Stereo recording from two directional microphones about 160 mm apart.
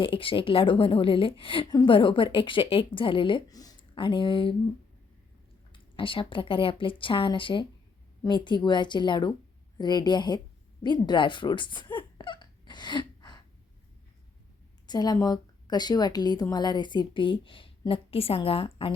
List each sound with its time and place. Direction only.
0.0 s a woman's voice: 35° left (ahead or behind)
5.7 s a woman's voice: 30° left (ahead or behind)
10.8 s a sound: 30° left (ahead or behind)
14.8 s a woman's voice: 25° left (ahead or behind)